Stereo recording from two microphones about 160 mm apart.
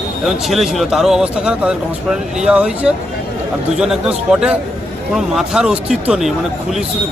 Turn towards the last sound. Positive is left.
turn(degrees=-5)  # may be behind; listen again after turning